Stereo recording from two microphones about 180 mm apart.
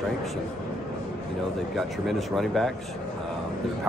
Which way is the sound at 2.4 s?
Centre (ahead or behind).